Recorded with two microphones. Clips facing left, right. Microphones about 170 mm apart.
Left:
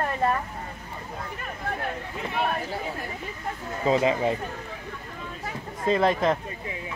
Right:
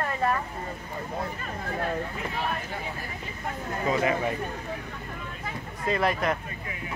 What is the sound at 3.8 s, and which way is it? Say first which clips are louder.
Speech: left 4 dB; 25° left (ahead or behind).